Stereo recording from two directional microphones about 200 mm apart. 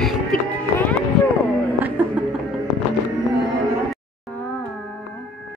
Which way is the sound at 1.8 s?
10° right (ahead or behind).